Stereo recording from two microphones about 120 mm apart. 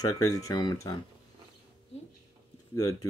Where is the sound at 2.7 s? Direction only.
30° left (ahead or behind).